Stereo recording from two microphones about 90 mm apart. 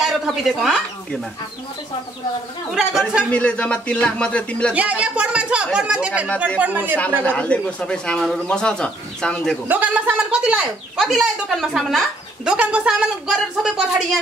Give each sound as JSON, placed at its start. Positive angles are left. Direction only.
{"t": 0.0, "sound": "speech", "side_deg": -5}
{"t": 2.7, "sound": "speech", "side_deg": -5}
{"t": 3.3, "sound": "a man's voice", "side_deg": 15}
{"t": 4.7, "sound": "speech", "side_deg": -15}
{"t": 7.2, "sound": "a man's voice", "side_deg": 10}
{"t": 9.7, "sound": "speech", "side_deg": -15}
{"t": 12.5, "sound": "speech", "side_deg": -15}